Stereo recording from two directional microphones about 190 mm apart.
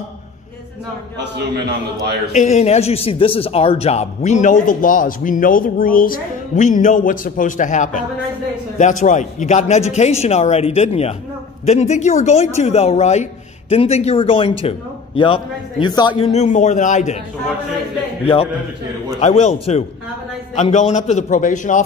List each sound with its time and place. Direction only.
2.3 s a man's voice: 40° left (ahead or behind)
18.2 s a man's voice: 30° left (ahead or behind)